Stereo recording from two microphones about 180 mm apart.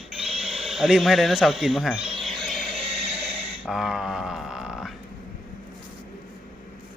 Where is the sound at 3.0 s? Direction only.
35° right (ahead or behind).